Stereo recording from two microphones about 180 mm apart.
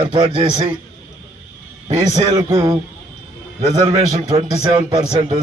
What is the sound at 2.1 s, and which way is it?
Speech, 20° right (ahead or behind).